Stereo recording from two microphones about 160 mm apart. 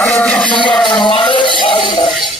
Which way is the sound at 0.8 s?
30° left (ahead or behind).